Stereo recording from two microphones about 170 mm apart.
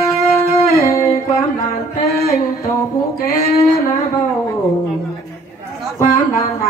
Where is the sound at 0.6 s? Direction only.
20° left (ahead or behind).